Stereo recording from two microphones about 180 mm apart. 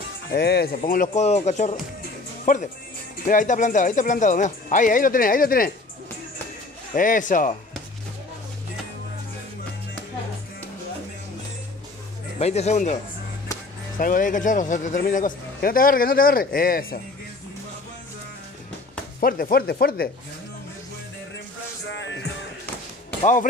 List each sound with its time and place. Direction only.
0.3 s speech: 65° left (ahead or behind)
0.7 s a man's voice: 50° left (ahead or behind)
7.0 s a man's voice: 45° left (ahead or behind)
12.4 s a man's voice: 35° left (ahead or behind); by 17.0 s 55° left (ahead or behind)
19.1 s speech: 50° left (ahead or behind)
21.8 s music: 90° left